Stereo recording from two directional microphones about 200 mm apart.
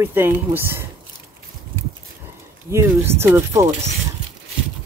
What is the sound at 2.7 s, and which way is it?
Speech, 15° right (ahead or behind).